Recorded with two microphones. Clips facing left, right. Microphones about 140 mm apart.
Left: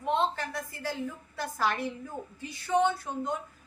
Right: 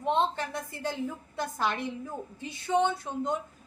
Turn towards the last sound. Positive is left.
turn(degrees=-20)  # may be behind; listen again after turning